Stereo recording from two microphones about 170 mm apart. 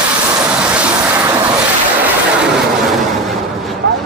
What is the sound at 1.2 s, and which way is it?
Vehicle, 20° right (ahead or behind).